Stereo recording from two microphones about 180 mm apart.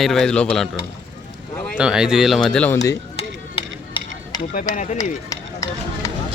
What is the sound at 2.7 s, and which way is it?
Speech, 15° left (ahead or behind).